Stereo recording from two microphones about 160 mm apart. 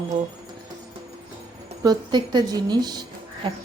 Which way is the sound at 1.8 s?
25° right (ahead or behind).